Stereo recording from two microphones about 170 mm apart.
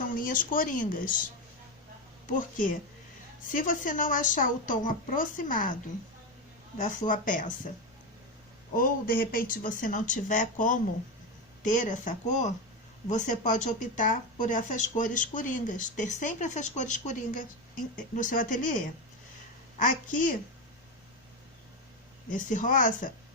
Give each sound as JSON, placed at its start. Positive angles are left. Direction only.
{"t": 0.1, "sound": "speech", "side_deg": 55}
{"t": 3.5, "sound": "speech", "side_deg": 50}
{"t": 6.7, "sound": "speech", "side_deg": 50}
{"t": 8.7, "sound": "speech", "side_deg": 55}
{"t": 19.8, "sound": "speech", "side_deg": 50}
{"t": 22.3, "sound": "speech", "side_deg": 50}